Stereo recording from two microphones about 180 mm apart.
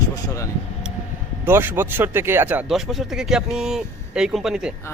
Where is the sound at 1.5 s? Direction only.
10° right (ahead or behind).